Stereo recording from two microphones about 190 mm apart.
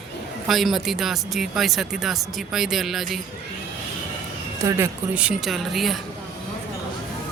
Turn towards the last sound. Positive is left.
turn(degrees=0)  # may be behind; listen again after turning